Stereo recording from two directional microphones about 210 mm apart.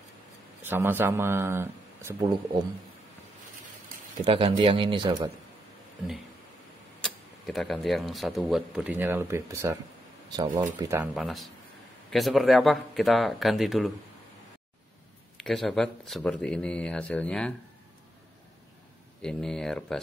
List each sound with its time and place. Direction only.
0.7 s speech: 10° right (ahead or behind)
4.2 s a man's voice: 25° right (ahead or behind)
7.0 s speech: centre (ahead or behind)
15.3 s speech: centre (ahead or behind)
19.2 s speech: 5° left (ahead or behind)